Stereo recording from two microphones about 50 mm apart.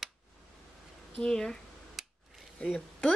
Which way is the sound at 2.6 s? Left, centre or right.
Left.